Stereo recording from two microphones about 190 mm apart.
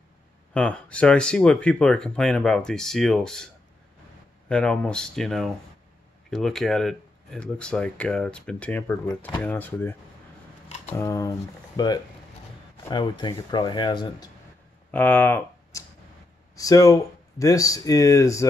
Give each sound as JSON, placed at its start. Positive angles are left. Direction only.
{"t": 0.6, "sound": "speech", "side_deg": 5}
{"t": 4.5, "sound": "speech", "side_deg": 5}
{"t": 14.9, "sound": "speech", "side_deg": 10}